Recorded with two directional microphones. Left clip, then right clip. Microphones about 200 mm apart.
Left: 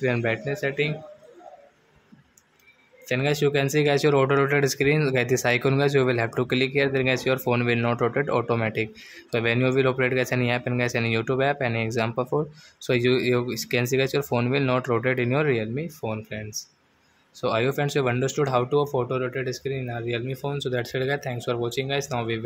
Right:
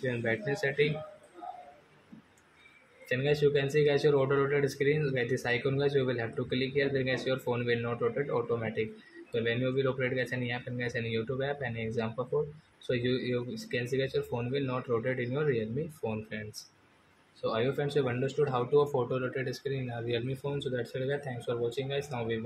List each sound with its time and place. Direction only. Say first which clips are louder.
0.0 s speech: left 7 dB; 35° left (ahead or behind)
3.1 s speech: left 4 dB; 35° left (ahead or behind)